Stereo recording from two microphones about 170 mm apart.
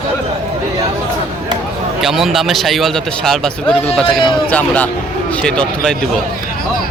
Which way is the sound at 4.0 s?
30° left (ahead or behind).